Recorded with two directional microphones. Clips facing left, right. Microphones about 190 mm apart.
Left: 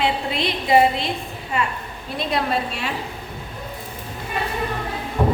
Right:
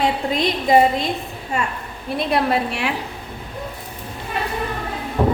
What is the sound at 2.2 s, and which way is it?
Speech, 60° right (ahead or behind).